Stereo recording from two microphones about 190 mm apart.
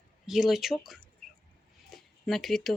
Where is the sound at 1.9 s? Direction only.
Centre (ahead or behind).